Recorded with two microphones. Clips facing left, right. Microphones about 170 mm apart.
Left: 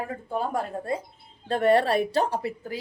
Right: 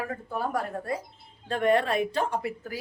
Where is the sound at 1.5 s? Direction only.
35° left (ahead or behind).